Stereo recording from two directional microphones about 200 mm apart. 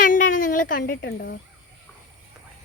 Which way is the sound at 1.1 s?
60° left (ahead or behind).